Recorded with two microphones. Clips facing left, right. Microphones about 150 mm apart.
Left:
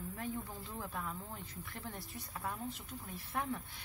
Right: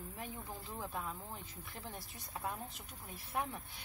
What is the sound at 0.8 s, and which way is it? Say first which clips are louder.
Speech: even; 20° right (ahead or behind).